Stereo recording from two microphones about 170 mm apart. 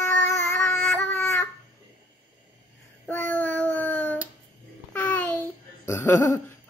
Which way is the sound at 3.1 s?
10° left (ahead or behind).